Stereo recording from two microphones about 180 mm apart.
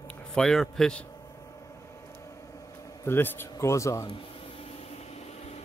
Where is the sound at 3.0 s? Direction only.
10° left (ahead or behind).